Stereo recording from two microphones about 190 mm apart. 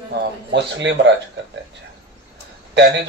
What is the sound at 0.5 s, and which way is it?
Speech, 70° right (ahead or behind).